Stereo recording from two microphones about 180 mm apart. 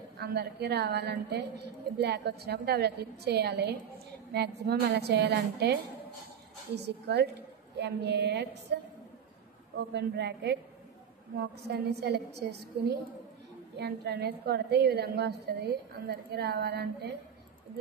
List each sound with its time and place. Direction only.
0.2 s a woman's voice: 65° right (ahead or behind)
9.8 s a woman's voice: 70° right (ahead or behind)
11.6 s a woman's voice: 65° right (ahead or behind)
13.7 s a woman's voice: 65° right (ahead or behind)